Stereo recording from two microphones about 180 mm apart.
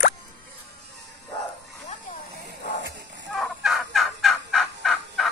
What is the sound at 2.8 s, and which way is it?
Music, 80° right.